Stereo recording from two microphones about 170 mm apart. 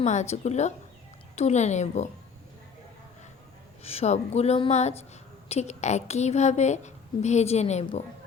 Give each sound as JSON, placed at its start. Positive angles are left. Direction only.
{"t": 0.0, "sound": "a woman's voice", "side_deg": 45}
{"t": 3.8, "sound": "a woman's voice", "side_deg": 40}